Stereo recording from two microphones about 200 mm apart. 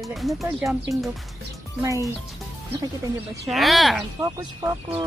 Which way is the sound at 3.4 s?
Centre (ahead or behind).